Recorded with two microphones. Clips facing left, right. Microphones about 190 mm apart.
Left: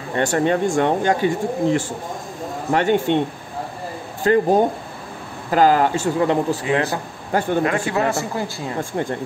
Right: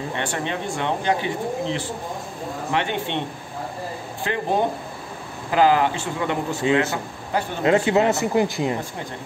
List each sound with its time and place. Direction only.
0.1 s speech: 45° left (ahead or behind)
4.2 s speech: 45° left (ahead or behind)
6.6 s speech: 25° right (ahead or behind)